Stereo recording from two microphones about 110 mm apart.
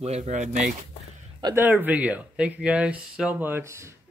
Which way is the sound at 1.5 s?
15° right (ahead or behind).